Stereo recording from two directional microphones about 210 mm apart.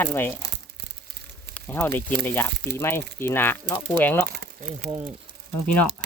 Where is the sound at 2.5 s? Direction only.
55° right (ahead or behind).